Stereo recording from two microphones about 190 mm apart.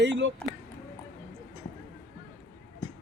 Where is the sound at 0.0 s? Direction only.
70° right (ahead or behind).